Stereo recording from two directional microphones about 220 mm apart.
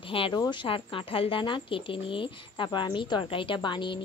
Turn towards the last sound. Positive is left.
turn(degrees=20)  # may be behind; listen again after turning